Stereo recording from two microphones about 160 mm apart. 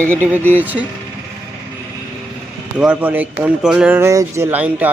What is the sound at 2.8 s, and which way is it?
Speech, 10° right (ahead or behind).